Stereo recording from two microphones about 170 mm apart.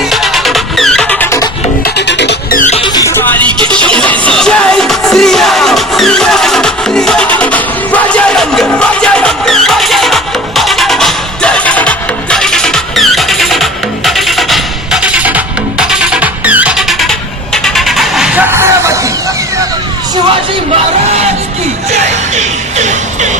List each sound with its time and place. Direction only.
0.1 s music: centre (ahead or behind)
2.0 s music: 90° left
2.6 s music: 45° left (ahead or behind)
2.8 s music: 20° left (ahead or behind); by 18.9 s 15° right (ahead or behind)
22.4 s music: 45° right (ahead or behind)